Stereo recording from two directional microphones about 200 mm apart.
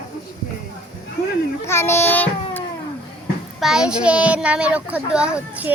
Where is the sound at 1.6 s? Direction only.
10° left (ahead or behind).